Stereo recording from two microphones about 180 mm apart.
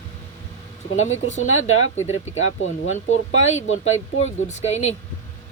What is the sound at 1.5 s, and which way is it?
Speech, 90° left.